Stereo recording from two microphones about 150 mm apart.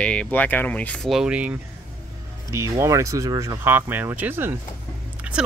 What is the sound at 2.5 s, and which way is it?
Speech, 20° right (ahead or behind).